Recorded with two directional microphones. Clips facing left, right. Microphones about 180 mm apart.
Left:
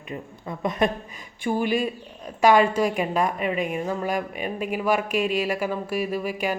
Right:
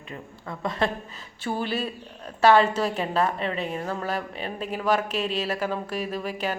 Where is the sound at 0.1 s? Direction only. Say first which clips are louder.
Left 4 dB; 20° left (ahead or behind).